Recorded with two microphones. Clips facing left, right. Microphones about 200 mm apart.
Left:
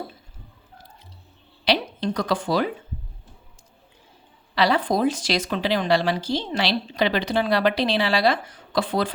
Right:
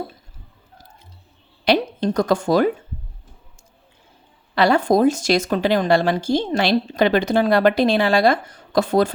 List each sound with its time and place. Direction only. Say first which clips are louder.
1.6 s a woman's voice: right 5 dB; 50° right (ahead or behind)
4.5 s a woman's voice: right 5 dB; 50° right (ahead or behind)